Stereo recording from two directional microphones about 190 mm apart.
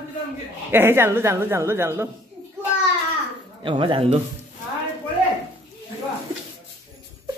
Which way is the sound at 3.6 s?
25° right (ahead or behind).